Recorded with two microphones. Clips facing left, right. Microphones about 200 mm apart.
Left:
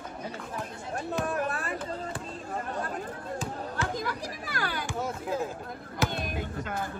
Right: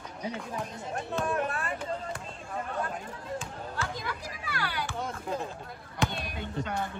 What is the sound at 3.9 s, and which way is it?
Speech, 45° left (ahead or behind).